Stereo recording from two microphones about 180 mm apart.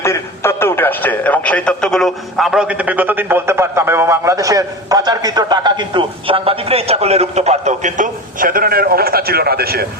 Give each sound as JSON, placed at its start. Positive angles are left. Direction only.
{"t": 0.0, "sound": "speech", "side_deg": 15}